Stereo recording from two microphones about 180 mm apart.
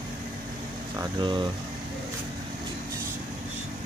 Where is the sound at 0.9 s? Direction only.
25° right (ahead or behind).